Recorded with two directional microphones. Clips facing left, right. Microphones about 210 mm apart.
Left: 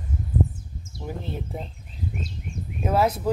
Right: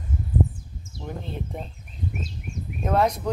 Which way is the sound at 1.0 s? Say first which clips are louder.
Left 1 dB; 5° left (ahead or behind).